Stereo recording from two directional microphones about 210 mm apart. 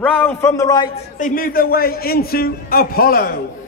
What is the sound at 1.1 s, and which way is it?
A man's voice, 40° left (ahead or behind).